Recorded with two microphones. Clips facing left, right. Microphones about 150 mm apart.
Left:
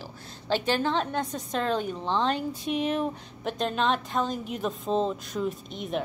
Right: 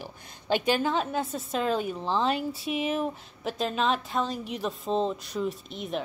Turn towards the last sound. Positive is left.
turn(degrees=0)  # may be behind; listen again after turning